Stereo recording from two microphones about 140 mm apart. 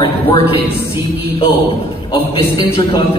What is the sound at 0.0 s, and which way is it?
Speech, 35° left (ahead or behind).